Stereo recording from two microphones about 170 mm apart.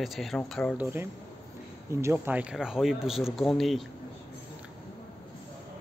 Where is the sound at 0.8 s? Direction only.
15° right (ahead or behind).